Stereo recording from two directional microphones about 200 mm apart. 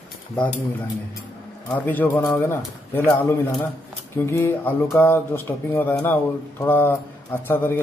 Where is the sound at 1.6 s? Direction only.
10° left (ahead or behind).